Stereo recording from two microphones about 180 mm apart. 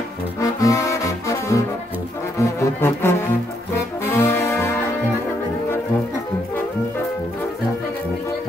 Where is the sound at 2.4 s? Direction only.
15° left (ahead or behind).